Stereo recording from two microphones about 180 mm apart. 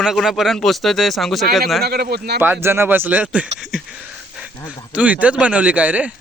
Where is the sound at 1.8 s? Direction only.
60° right (ahead or behind).